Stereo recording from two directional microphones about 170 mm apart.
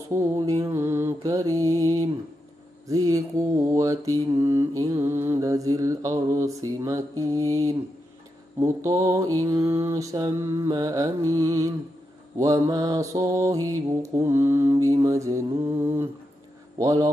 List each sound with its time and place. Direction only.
0.1 s mantra: 20° right (ahead or behind)
16.7 s a man's voice: 20° right (ahead or behind)